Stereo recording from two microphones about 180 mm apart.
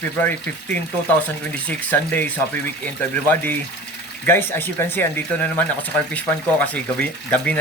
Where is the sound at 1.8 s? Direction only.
10° left (ahead or behind).